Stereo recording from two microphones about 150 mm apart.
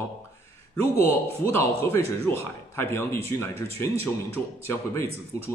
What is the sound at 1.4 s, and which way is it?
A man's voice, 15° left (ahead or behind).